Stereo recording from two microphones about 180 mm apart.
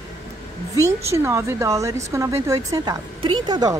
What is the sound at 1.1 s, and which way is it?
A woman's voice, 15° right (ahead or behind).